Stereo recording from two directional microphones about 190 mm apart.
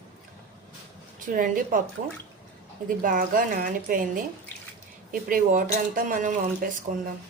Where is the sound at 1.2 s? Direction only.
45° right (ahead or behind).